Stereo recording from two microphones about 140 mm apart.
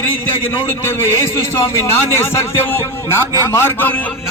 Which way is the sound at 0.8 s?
20° left (ahead or behind).